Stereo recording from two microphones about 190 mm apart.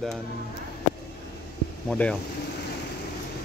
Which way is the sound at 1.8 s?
5° left (ahead or behind).